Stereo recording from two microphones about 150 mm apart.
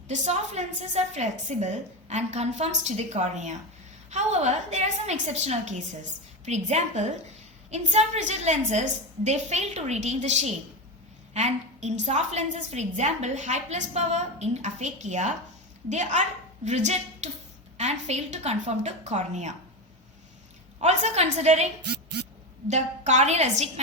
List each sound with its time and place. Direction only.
0.1 s a woman's voice: 50° right (ahead or behind)
20.8 s a woman's voice: 45° right (ahead or behind)
22.7 s a woman's voice: 50° right (ahead or behind)